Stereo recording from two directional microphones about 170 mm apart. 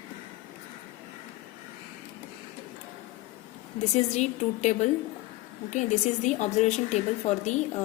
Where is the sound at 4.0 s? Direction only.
40° left (ahead or behind).